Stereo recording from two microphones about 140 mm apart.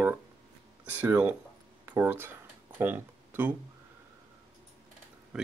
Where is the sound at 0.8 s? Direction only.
15° right (ahead or behind).